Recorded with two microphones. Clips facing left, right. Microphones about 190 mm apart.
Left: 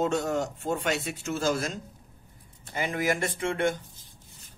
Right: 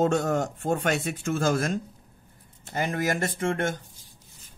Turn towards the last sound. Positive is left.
turn(degrees=-45)  # may be behind; listen again after turning